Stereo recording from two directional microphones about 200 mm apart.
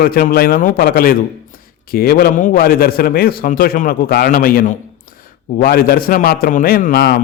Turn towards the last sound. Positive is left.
turn(degrees=45)  # may be behind; listen again after turning